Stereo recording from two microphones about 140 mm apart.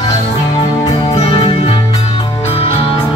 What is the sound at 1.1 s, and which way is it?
Music, 45° left (ahead or behind).